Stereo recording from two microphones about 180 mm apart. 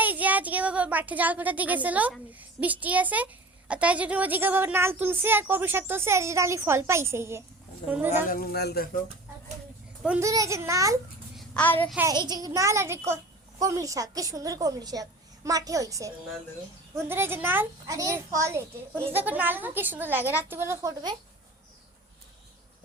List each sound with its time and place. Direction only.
0.0 s a child's voice: 10° right (ahead or behind)
8.3 s speech: 60° left (ahead or behind)
10.2 s a child's voice: 15° right (ahead or behind)
11.3 s a sound: 10° left (ahead or behind)
12.0 s a child's voice: 25° right (ahead or behind)